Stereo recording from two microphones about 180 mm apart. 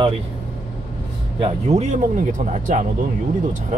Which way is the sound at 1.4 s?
35° right (ahead or behind).